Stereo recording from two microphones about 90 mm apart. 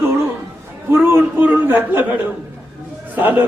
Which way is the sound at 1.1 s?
20° right (ahead or behind).